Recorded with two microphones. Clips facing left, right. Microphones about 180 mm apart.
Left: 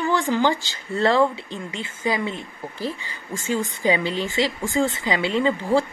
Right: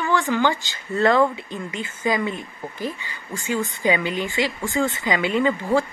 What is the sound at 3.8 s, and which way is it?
Speech, 35° left (ahead or behind).